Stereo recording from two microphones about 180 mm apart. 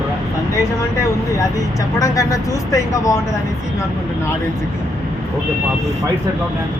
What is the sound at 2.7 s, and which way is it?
Speech, 20° left (ahead or behind).